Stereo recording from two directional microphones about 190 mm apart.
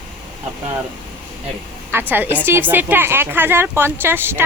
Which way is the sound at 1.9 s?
10° right (ahead or behind).